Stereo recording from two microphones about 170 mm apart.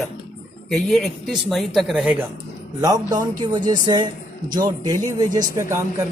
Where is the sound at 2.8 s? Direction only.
20° right (ahead or behind).